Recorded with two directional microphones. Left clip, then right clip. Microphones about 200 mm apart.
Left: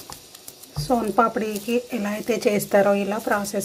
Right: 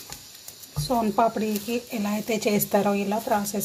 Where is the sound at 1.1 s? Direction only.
15° left (ahead or behind).